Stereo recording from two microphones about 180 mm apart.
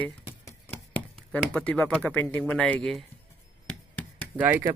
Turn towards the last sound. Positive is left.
turn(degrees=-10)  # may be behind; listen again after turning